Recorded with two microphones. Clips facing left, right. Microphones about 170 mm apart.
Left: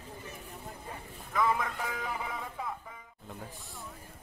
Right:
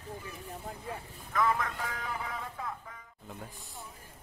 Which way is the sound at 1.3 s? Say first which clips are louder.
Even; 20° left (ahead or behind).